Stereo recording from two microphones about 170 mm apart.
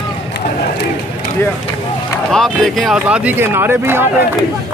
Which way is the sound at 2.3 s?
Centre (ahead or behind).